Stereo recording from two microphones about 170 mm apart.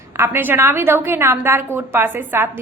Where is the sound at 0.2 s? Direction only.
10° right (ahead or behind).